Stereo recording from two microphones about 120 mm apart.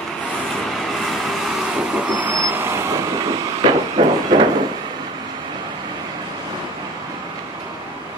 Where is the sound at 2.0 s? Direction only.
15° right (ahead or behind).